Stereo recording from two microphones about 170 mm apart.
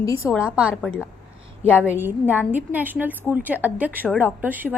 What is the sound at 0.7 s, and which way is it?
Speech, 10° left (ahead or behind).